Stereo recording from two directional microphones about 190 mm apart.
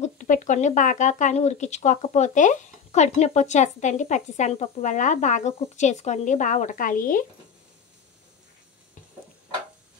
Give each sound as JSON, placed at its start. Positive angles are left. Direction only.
{"t": 0.0, "sound": "speech", "side_deg": 40}